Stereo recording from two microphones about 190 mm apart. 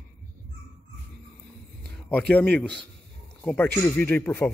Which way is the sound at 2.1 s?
5° left (ahead or behind).